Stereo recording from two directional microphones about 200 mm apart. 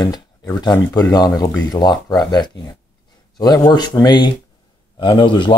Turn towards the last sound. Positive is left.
turn(degrees=25)  # may be behind; listen again after turning